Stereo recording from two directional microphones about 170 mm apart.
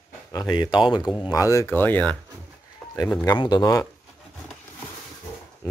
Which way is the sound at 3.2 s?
25° left (ahead or behind).